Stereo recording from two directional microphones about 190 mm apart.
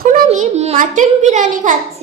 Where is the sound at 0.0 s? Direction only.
50° right (ahead or behind).